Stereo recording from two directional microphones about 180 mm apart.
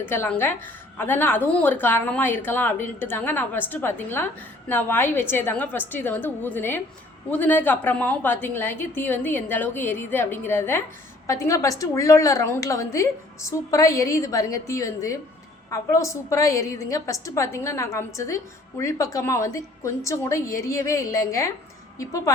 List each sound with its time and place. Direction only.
0.0 s a woman's voice: 10° left (ahead or behind)